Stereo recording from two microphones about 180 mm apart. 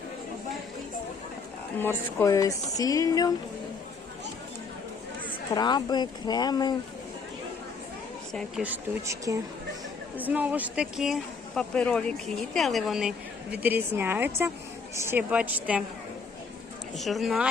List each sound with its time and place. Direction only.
2.1 s speech: 20° left (ahead or behind)
5.5 s speech: 25° left (ahead or behind)
8.3 s speech: 5° left (ahead or behind)
8.6 s a woman's voice: 15° right (ahead or behind)
17.0 s speech: centre (ahead or behind)